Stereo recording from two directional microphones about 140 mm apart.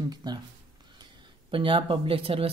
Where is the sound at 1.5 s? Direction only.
35° right (ahead or behind).